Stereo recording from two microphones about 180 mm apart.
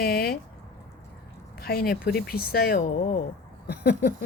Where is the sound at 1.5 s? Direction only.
55° left (ahead or behind).